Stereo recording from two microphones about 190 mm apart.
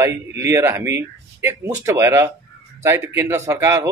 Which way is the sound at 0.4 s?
15° right (ahead or behind).